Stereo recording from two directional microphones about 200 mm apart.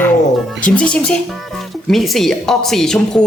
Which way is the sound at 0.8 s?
5° left (ahead or behind).